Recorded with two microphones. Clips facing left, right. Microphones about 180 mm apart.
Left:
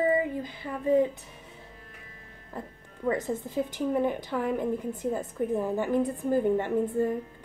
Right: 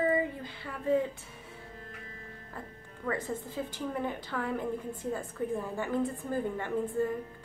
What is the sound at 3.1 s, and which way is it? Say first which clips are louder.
A woman's voice: left 5 dB; 20° left (ahead or behind).